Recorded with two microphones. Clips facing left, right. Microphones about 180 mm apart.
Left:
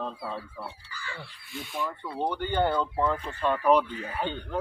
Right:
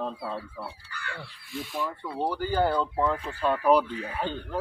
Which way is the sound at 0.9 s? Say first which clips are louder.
Right 2 dB; 60° right (ahead or behind).